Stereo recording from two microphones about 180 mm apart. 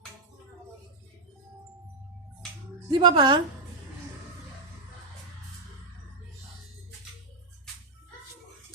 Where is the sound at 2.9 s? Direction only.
25° right (ahead or behind).